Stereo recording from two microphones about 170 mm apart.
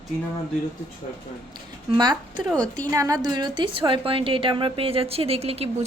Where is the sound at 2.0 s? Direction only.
25° right (ahead or behind).